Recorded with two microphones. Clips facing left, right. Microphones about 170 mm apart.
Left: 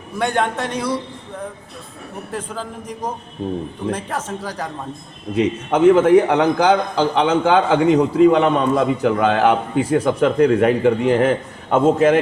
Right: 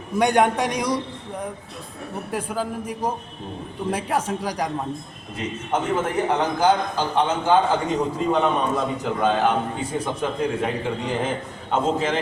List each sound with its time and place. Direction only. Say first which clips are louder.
0.2 s a man's voice: right 2 dB; 15° right (ahead or behind)
2.3 s a man's voice: right 2 dB; 10° right (ahead or behind)
5.4 s a man's voice: left 10 dB; 80° left; by 12.2 s 60° left (ahead or behind)